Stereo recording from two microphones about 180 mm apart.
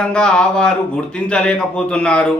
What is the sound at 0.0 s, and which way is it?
A man's voice, 5° left (ahead or behind).